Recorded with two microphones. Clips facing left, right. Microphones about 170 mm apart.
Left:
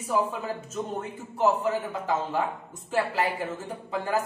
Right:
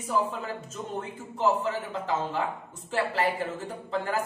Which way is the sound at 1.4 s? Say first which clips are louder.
Left 2 dB; 10° left (ahead or behind).